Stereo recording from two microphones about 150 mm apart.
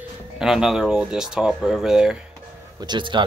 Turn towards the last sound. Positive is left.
turn(degrees=-30)  # may be behind; listen again after turning